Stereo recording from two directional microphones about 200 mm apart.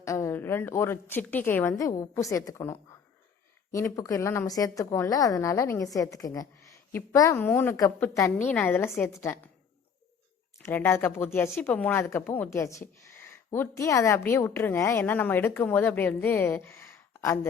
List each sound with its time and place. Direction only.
0.0 s speech: 15° left (ahead or behind)
10.6 s speech: 10° left (ahead or behind)